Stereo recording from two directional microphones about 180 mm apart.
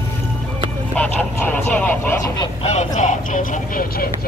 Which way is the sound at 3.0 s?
45° left (ahead or behind).